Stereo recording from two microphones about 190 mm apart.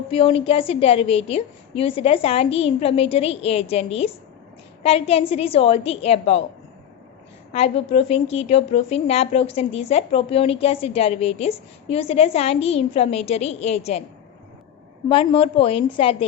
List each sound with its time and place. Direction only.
0.1 s a woman's voice: 30° left (ahead or behind)
7.5 s a woman's voice: 35° left (ahead or behind)
15.1 s a woman's voice: 30° left (ahead or behind)